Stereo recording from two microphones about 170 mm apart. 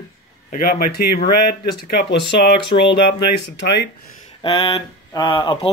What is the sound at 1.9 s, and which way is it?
Speech, 80° left.